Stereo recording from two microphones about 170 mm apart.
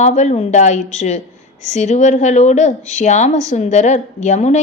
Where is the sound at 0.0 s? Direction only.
45° left (ahead or behind).